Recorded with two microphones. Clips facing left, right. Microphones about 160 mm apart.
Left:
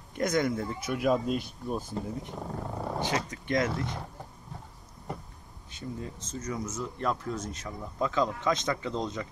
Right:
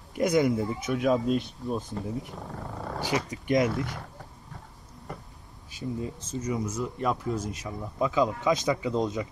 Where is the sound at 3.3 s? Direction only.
15° right (ahead or behind).